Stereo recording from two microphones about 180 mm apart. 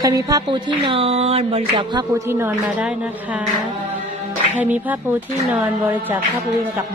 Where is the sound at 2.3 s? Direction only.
15° right (ahead or behind).